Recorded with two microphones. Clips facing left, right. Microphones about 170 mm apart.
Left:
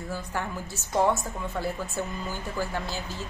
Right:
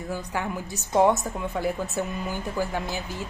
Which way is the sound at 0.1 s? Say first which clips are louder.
Right 3 dB; 15° right (ahead or behind).